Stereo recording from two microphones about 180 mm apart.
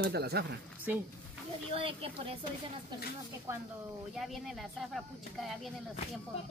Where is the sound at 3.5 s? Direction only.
15° right (ahead or behind).